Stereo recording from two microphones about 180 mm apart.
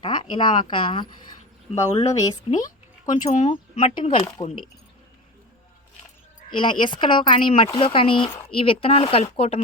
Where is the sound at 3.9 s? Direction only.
30° left (ahead or behind).